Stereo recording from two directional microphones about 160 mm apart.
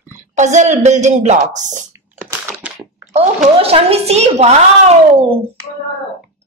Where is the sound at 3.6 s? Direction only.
35° right (ahead or behind).